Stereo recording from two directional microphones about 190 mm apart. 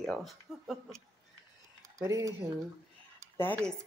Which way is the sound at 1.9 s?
15° right (ahead or behind).